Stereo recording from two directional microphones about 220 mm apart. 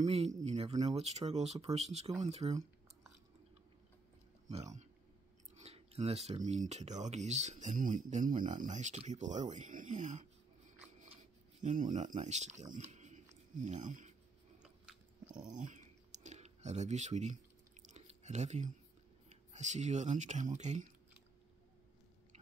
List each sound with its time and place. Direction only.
0.0 s speech: 30° right (ahead or behind)
5.6 s speech: 30° right (ahead or behind)
11.6 s speech: 35° right (ahead or behind)
15.4 s typing: 35° right (ahead or behind)
17.8 s chewing: 30° right (ahead or behind)
19.2 s speech: 30° right (ahead or behind)